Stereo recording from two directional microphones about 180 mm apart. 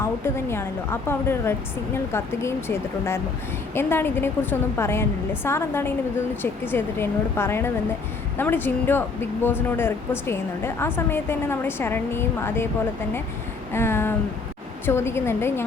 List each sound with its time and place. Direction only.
0.0 s speech: 15° left (ahead or behind)
13.7 s speech: 15° left (ahead or behind)